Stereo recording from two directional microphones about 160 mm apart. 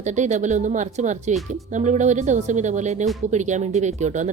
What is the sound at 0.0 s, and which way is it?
Speech, 45° right (ahead or behind).